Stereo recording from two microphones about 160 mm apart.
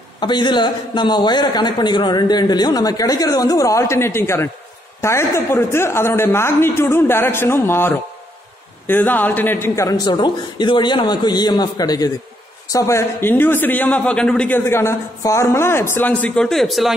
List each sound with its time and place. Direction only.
0.2 s a man's voice: 25° left (ahead or behind); by 16.9 s centre (ahead or behind)